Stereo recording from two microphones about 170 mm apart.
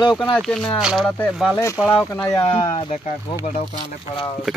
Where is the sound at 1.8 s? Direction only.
Centre (ahead or behind).